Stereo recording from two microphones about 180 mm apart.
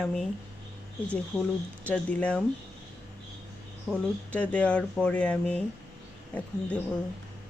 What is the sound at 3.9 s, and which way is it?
Speech, centre (ahead or behind).